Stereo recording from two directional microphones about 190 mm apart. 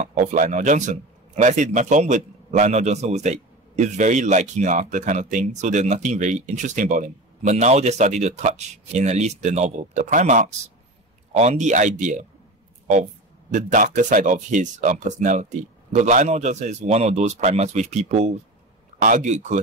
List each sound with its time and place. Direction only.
0.0 s a man's voice: 40° right (ahead or behind)
13.5 s a man's voice: 40° right (ahead or behind)